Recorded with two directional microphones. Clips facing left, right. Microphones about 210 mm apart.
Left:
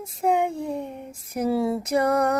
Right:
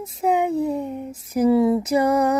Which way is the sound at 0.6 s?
5° right (ahead or behind).